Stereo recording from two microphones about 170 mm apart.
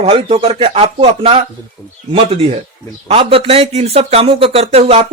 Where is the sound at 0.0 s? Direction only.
35° right (ahead or behind).